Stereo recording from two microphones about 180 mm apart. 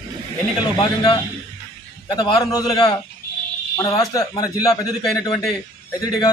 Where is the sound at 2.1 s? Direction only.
25° left (ahead or behind).